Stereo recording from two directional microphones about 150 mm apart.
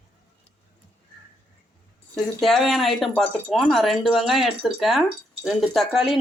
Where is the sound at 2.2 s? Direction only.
Centre (ahead or behind).